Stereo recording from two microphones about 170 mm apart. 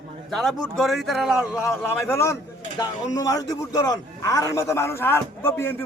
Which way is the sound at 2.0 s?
15° left (ahead or behind).